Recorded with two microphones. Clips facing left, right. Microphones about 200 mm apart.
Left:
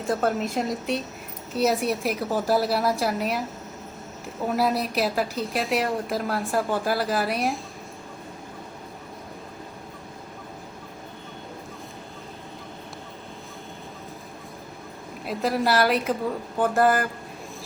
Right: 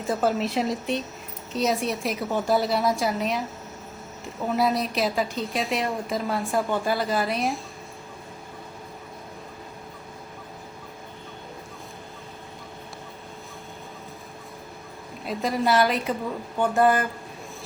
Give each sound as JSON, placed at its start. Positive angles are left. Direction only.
{"t": 0.1, "sound": "a woman's voice", "side_deg": 0}
{"t": 15.2, "sound": "a woman's voice", "side_deg": 0}